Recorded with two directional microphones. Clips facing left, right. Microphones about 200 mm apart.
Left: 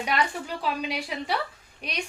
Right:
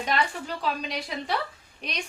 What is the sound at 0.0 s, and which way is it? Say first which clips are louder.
A woman's voice: even; 10° left (ahead or behind).